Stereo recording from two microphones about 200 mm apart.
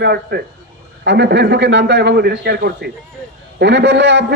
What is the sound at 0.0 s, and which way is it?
A man's voice, 55° right (ahead or behind).